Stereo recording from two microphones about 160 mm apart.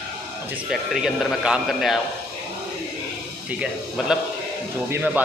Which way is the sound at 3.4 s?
5° right (ahead or behind).